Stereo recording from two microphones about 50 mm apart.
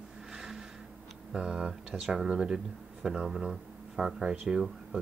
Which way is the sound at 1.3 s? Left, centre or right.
Centre.